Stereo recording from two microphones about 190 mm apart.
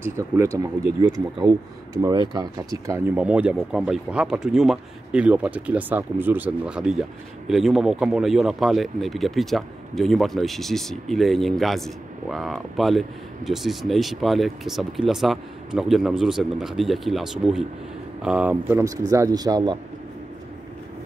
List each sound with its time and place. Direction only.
0.0 s speech: 15° right (ahead or behind)
2.0 s speech: 20° right (ahead or behind)